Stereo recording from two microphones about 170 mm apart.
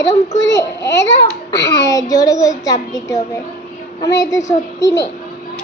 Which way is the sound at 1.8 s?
20° left (ahead or behind).